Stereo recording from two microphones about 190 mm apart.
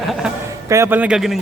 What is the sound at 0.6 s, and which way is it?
Speech, 15° right (ahead or behind).